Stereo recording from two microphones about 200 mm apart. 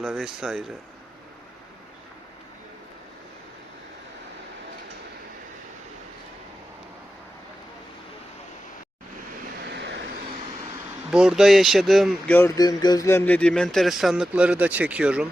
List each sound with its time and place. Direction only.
0.0 s speech: centre (ahead or behind)
9.6 s vehicle: 60° right (ahead or behind)
11.1 s speech: 5° right (ahead or behind)